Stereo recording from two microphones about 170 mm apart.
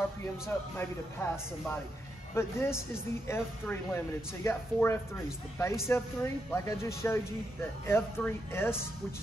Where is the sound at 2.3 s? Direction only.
15° left (ahead or behind).